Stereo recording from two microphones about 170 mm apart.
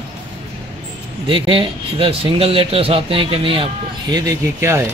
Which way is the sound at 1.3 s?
30° right (ahead or behind).